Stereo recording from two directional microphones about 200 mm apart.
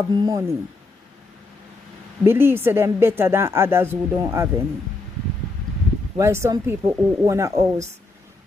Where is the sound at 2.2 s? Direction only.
10° right (ahead or behind).